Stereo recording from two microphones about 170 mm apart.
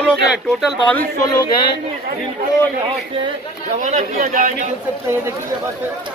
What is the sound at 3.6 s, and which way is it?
Speech, 45° right (ahead or behind).